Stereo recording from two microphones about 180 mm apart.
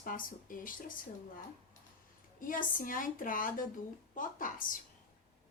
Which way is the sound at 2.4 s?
50° left (ahead or behind).